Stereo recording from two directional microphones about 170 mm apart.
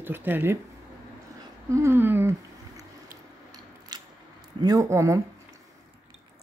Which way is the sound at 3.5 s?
25° right (ahead or behind).